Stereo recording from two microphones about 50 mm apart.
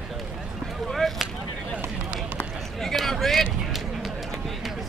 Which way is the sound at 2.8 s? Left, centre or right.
Centre.